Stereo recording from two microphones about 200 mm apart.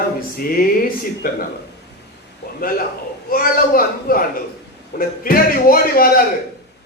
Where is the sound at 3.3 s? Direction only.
45° left (ahead or behind).